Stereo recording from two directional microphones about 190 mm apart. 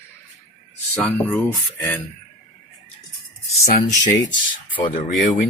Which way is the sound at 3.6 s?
40° left (ahead or behind).